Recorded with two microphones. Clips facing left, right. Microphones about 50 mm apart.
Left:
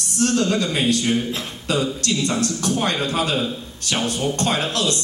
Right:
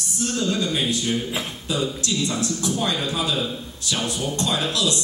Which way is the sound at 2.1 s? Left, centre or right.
Left.